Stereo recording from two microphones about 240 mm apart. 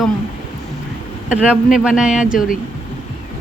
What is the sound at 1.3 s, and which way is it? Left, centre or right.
Speech, centre.